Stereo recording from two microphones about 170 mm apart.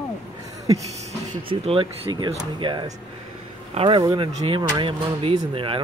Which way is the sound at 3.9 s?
25° right (ahead or behind).